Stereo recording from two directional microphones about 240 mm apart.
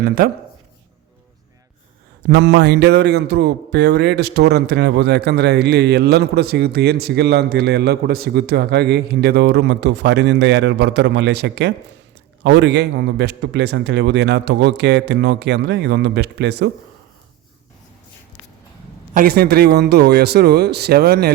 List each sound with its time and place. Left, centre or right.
2.2 s speech: right
19.1 s speech: right